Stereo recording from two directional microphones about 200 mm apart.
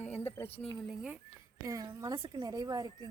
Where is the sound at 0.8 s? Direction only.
5° right (ahead or behind).